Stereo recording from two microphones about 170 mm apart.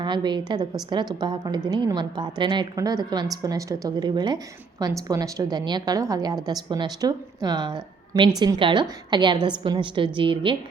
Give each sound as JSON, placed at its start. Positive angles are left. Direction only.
{"t": 0.0, "sound": "a woman's voice", "side_deg": -25}